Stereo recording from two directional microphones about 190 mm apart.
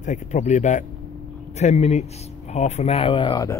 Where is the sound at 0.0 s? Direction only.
40° left (ahead or behind).